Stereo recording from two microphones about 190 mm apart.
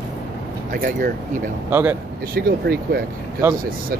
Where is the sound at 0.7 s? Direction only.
45° right (ahead or behind).